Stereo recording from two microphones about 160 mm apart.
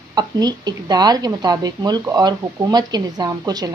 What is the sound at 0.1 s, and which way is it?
A woman's voice, 25° right (ahead or behind).